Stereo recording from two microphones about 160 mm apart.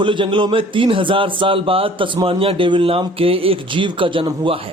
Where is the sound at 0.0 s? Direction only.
30° right (ahead or behind).